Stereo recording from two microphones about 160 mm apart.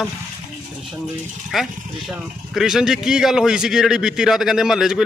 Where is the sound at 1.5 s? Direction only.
Centre (ahead or behind).